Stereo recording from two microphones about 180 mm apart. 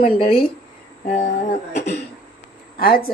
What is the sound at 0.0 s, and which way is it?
Speech, 30° left (ahead or behind).